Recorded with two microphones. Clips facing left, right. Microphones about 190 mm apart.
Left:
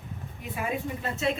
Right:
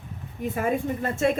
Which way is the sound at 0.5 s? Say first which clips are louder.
Right 5 dB; 50° right (ahead or behind).